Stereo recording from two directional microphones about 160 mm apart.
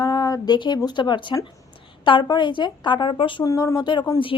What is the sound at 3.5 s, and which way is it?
Speech, 20° left (ahead or behind).